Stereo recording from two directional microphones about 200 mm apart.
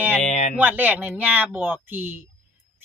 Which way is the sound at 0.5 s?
10° right (ahead or behind).